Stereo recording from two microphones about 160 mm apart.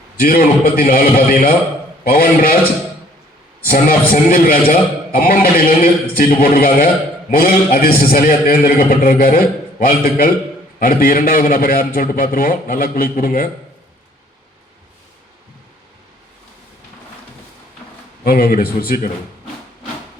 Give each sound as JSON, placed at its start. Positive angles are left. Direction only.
{"t": 0.2, "sound": "a man's voice", "side_deg": 65}
{"t": 3.7, "sound": "a man's voice", "side_deg": 65}
{"t": 18.3, "sound": "speech", "side_deg": 65}